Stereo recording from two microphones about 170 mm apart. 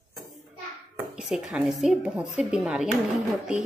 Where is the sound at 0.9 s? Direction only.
5° right (ahead or behind).